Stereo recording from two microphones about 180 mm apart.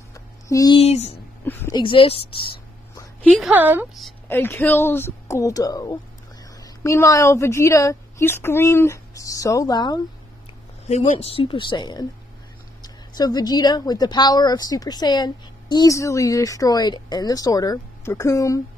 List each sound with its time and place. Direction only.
0.1 s a sound: 20° left (ahead or behind)
0.7 s speech: 35° left (ahead or behind)
1.4 s a woman's voice: 15° left (ahead or behind)
1.8 s a woman's voice: 30° left (ahead or behind)
3.2 s a woman's voice: 5° left (ahead or behind)
3.5 s a woman's voice: 10° right (ahead or behind)
4.3 s a woman's voice: 10° left (ahead or behind)
10.9 s speech: 40° left (ahead or behind); by 18.6 s 20° left (ahead or behind)